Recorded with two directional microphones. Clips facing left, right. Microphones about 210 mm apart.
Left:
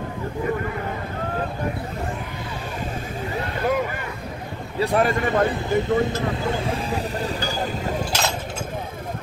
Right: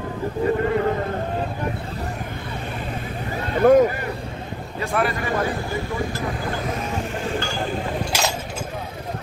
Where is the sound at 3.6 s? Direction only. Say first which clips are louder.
Right 11 dB; 40° right (ahead or behind).